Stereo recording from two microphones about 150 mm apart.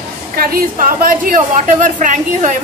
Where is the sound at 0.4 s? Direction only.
70° right (ahead or behind).